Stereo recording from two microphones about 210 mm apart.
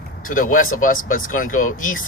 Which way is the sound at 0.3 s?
40° left (ahead or behind).